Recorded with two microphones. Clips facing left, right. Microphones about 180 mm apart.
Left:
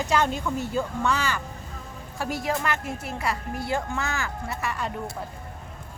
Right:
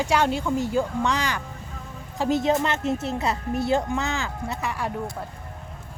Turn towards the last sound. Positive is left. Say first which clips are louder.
# right 2 dB
turn(degrees=-15)  # may be behind; listen again after turning